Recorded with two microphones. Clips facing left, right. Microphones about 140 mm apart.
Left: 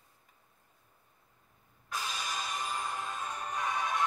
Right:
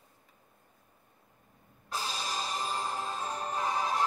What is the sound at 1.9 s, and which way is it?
Music, 30° right (ahead or behind).